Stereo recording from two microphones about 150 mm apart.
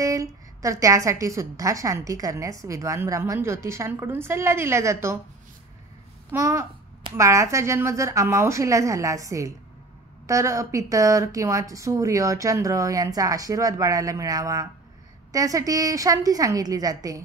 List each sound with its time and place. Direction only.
0.0 s a woman's voice: 20° right (ahead or behind)
6.3 s a woman's voice: 20° right (ahead or behind)